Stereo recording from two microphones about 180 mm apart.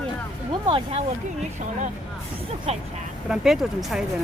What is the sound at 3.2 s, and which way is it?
Speech, 5° right (ahead or behind).